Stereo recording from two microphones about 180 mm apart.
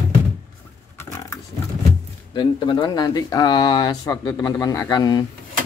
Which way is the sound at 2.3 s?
25° left (ahead or behind).